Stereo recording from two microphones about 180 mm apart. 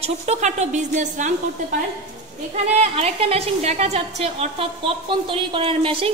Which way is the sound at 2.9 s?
35° right (ahead or behind).